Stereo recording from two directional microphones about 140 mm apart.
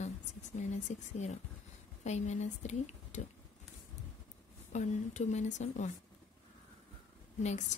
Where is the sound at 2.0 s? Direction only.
55° left (ahead or behind).